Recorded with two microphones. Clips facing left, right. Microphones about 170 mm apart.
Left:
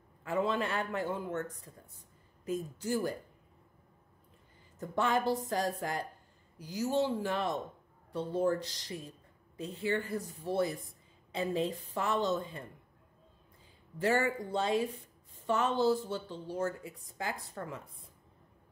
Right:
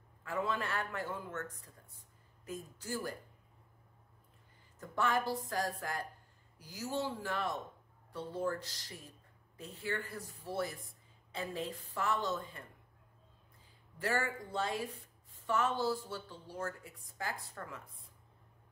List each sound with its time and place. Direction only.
0.2 s speech: 20° left (ahead or behind)
4.7 s speech: 20° left (ahead or behind)
13.9 s speech: 20° left (ahead or behind)